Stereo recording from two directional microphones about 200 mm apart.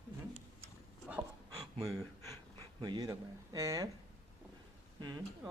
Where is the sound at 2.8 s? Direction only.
20° right (ahead or behind).